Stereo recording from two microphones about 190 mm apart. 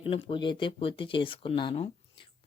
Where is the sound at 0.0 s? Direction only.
25° left (ahead or behind).